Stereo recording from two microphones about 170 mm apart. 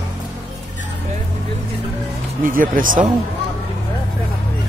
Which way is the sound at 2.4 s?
55° right (ahead or behind).